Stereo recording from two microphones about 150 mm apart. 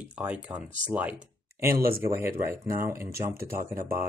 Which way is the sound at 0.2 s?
10° right (ahead or behind).